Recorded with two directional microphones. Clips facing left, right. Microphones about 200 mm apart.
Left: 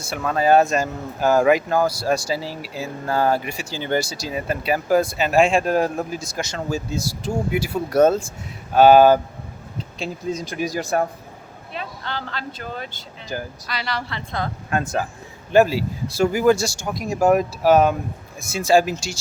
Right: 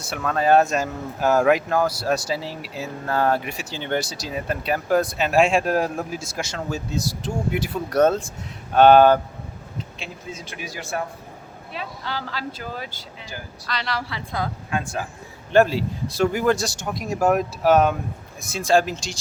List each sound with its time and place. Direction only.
0.1 s speech: 5° left (ahead or behind)
10.0 s speech: 40° left (ahead or behind)
11.7 s speech: 5° right (ahead or behind)
13.3 s speech: 45° left (ahead or behind)
13.7 s speech: 5° left (ahead or behind)
14.7 s speech: 45° left (ahead or behind)
15.5 s speech: 5° left (ahead or behind)